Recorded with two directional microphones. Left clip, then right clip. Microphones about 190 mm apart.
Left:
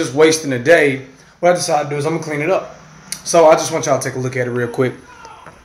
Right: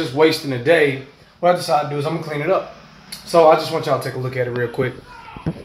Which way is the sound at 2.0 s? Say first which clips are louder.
Left 4 dB; 10° left (ahead or behind).